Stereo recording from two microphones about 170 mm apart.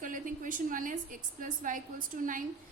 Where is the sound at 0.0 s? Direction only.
50° right (ahead or behind).